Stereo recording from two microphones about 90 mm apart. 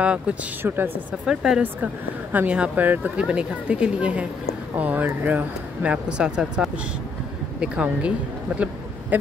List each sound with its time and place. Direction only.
0.0 s speech: 15° right (ahead or behind)
0.6 s a woman's voice: 25° right (ahead or behind)
1.2 s speech: 5° right (ahead or behind)